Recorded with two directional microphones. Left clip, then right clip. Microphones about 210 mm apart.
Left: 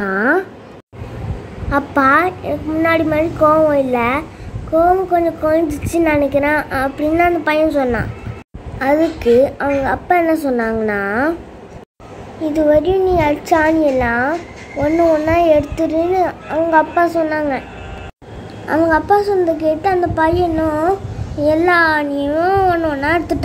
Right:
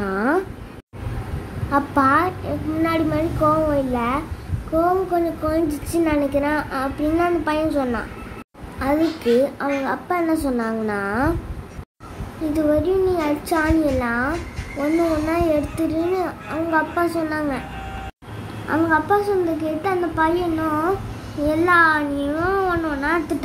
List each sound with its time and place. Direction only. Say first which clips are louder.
0.0 s a sound: left 6 dB; 10° left (ahead or behind)
1.7 s a woman's voice: left 4 dB; 15° left (ahead or behind)
12.5 s a woman's voice: left 6 dB; 15° left (ahead or behind)
18.7 s a child's voice: left 5 dB; 25° left (ahead or behind)